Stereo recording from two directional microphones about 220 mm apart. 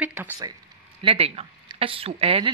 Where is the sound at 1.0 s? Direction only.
25° right (ahead or behind).